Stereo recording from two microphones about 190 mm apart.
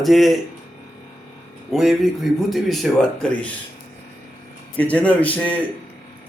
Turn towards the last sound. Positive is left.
turn(degrees=10)  # may be behind; listen again after turning